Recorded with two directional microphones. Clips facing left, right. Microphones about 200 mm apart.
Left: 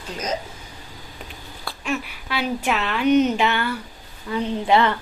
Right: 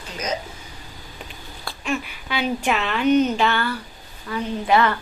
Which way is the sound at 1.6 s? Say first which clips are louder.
Even; 5° left (ahead or behind).